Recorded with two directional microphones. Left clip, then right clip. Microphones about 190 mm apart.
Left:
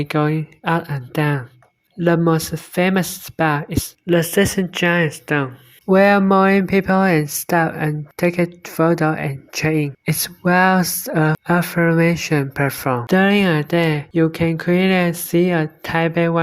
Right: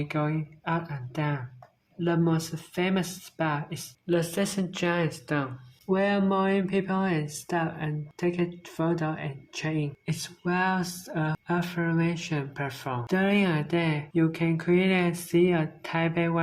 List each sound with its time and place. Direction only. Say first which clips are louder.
0.0 s speech: left 11 dB; 45° left (ahead or behind)
5.9 s speech: left 13 dB; 50° left (ahead or behind)